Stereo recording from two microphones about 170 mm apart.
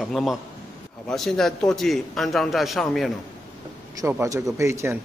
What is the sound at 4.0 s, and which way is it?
Speech, 20° right (ahead or behind).